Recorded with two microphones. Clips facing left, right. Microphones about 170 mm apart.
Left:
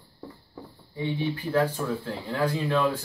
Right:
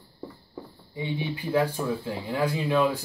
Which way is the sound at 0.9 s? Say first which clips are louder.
Left 2 dB; 15° right (ahead or behind).